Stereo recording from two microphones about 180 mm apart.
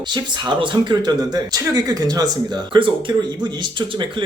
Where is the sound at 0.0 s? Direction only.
25° right (ahead or behind).